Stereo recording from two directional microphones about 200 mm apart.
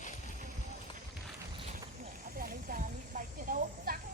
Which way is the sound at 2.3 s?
45° right (ahead or behind).